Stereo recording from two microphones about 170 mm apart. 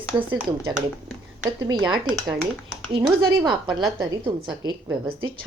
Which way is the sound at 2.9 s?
25° right (ahead or behind).